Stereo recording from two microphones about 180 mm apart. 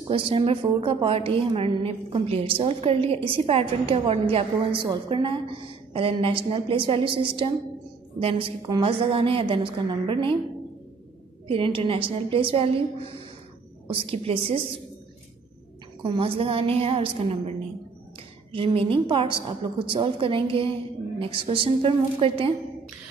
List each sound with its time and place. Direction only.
0.1 s a woman's voice: 30° right (ahead or behind)
11.4 s a woman's voice: 30° right (ahead or behind)
16.0 s a woman's voice: 30° right (ahead or behind)